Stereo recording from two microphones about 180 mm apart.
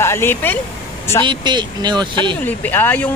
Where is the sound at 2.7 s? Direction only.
10° left (ahead or behind).